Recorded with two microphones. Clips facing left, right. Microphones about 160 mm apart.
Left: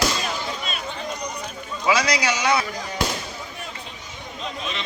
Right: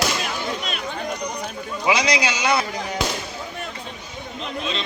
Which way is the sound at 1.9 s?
20° right (ahead or behind).